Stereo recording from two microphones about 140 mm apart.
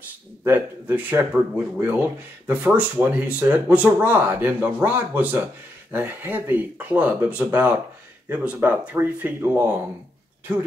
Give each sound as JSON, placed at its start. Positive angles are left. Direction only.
{"t": 0.4, "sound": "speech", "side_deg": -15}